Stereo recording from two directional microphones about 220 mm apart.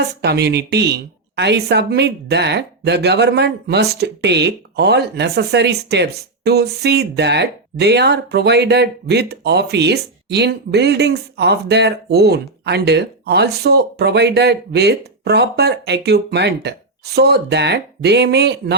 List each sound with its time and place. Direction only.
0.2 s a woman's voice: 50° right (ahead or behind)